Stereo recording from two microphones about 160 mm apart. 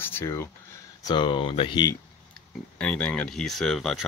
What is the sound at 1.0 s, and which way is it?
Speech, 30° left (ahead or behind).